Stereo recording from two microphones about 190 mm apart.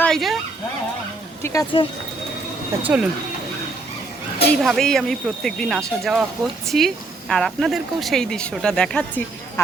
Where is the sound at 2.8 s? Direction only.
5° right (ahead or behind).